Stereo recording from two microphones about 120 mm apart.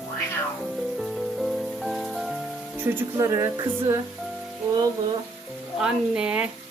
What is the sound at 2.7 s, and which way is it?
Speech, 15° right (ahead or behind).